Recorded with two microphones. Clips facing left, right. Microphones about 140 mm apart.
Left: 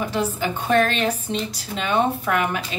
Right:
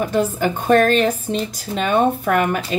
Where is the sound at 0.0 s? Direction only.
45° right (ahead or behind).